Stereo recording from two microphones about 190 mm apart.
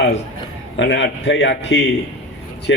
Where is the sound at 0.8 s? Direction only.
70° left (ahead or behind).